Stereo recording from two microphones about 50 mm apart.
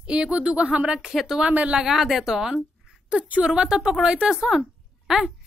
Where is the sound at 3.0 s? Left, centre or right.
Right.